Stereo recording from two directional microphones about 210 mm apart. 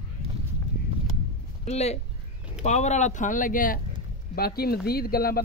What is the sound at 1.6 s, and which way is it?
Speech, 30° left (ahead or behind).